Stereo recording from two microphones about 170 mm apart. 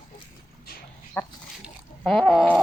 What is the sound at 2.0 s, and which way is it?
Speech, 5° left (ahead or behind).